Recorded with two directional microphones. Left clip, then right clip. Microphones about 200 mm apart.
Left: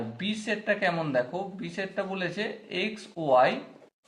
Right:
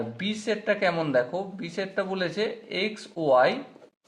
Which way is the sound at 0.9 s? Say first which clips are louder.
Right 3 dB; 40° right (ahead or behind).